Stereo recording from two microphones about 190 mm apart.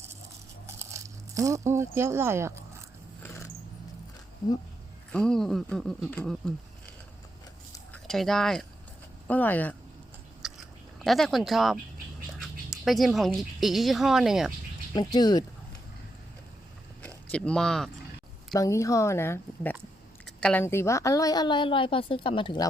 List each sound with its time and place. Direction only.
0.8 s a sound: 15° right (ahead or behind)
5.1 s speech: 5° left (ahead or behind)
7.9 s speech: centre (ahead or behind)
10.4 s chewing: centre (ahead or behind)
11.0 s speech: centre (ahead or behind)
14.9 s a woman's voice: 20° left (ahead or behind)
17.3 s speech: 5° left (ahead or behind)
18.5 s a woman's voice: 15° left (ahead or behind)